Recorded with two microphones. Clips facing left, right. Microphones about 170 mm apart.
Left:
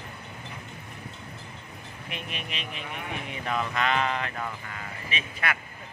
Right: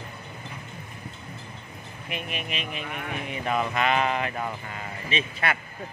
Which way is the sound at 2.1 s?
5° right (ahead or behind).